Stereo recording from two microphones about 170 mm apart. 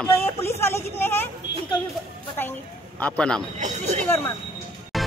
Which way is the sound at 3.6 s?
45° right (ahead or behind).